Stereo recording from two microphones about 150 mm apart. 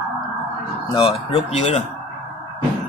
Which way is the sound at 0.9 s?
35° left (ahead or behind).